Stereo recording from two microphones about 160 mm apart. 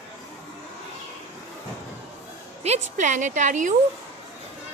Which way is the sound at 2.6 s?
45° right (ahead or behind).